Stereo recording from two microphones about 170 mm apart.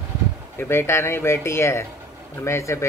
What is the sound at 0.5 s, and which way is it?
Speech, 15° left (ahead or behind).